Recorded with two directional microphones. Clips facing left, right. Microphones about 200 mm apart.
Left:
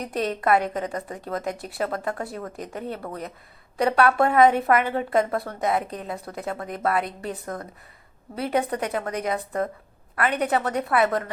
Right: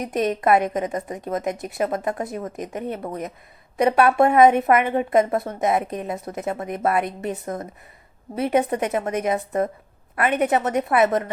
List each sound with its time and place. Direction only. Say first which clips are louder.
0.0 s a woman's voice: right 4 dB; 20° right (ahead or behind)